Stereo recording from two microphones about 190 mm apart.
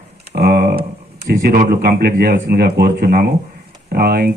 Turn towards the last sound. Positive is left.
turn(degrees=-55)  # may be behind; listen again after turning